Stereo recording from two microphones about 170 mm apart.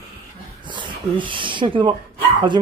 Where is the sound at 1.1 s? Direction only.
30° right (ahead or behind).